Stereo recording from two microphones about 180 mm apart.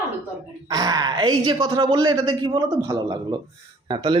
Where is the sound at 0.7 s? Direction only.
20° right (ahead or behind).